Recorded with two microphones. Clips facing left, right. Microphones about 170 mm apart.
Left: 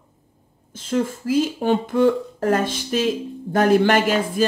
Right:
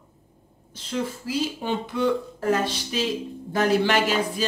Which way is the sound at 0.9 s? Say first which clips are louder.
Left 7 dB; 50° left (ahead or behind).